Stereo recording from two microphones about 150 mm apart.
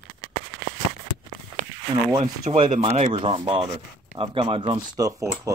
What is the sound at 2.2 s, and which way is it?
Rub, 45° right (ahead or behind).